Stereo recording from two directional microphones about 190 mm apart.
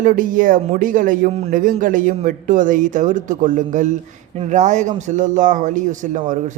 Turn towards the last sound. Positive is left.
turn(degrees=-40)  # may be behind; listen again after turning